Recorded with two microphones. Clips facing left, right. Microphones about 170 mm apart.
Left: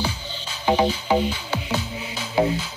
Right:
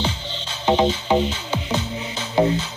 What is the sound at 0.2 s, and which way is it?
Music, 10° left (ahead or behind).